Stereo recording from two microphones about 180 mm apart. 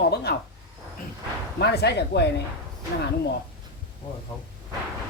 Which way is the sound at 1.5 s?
65° left (ahead or behind).